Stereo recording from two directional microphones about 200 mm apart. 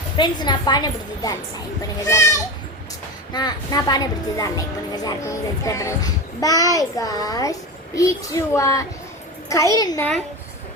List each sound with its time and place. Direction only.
0.2 s a woman's voice: 20° left (ahead or behind)